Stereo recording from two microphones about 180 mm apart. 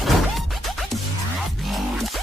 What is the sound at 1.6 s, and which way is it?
Music, centre (ahead or behind).